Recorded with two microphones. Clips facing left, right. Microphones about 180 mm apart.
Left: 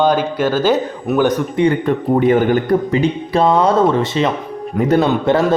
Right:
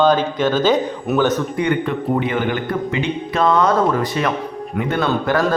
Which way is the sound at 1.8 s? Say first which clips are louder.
Left 6 dB; 45° left (ahead or behind).